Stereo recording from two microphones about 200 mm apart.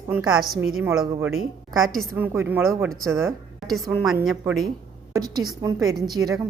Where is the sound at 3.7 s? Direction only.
Centre (ahead or behind).